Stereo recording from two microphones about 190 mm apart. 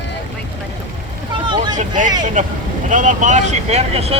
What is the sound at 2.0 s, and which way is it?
Speech, 45° right (ahead or behind).